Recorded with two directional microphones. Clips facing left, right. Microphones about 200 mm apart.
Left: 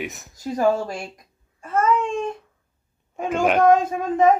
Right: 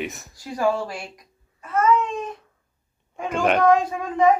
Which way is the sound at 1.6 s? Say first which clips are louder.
Right 1 dB; 30° left (ahead or behind).